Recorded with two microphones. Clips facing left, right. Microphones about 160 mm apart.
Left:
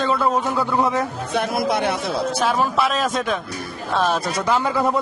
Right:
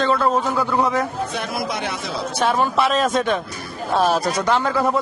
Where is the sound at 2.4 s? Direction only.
Centre (ahead or behind).